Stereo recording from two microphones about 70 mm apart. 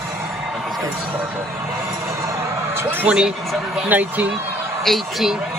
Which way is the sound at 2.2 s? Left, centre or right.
Right.